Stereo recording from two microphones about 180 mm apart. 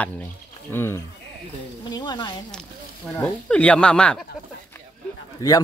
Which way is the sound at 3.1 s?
5° left (ahead or behind).